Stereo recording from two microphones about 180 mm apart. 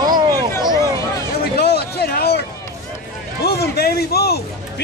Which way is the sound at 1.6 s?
60° left (ahead or behind).